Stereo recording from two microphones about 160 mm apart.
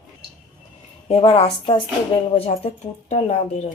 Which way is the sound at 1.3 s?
35° left (ahead or behind).